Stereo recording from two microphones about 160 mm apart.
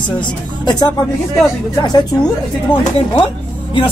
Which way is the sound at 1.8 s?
25° left (ahead or behind).